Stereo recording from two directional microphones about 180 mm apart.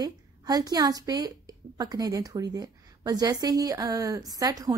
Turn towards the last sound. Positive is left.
turn(degrees=-20)  # may be behind; listen again after turning